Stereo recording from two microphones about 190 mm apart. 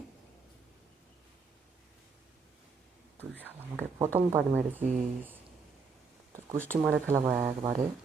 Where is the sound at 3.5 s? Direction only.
10° right (ahead or behind).